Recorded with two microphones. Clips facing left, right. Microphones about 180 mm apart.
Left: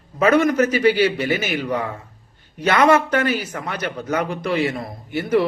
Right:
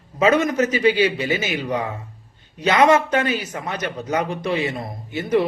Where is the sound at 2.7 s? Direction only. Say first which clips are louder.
Even; 20° right (ahead or behind).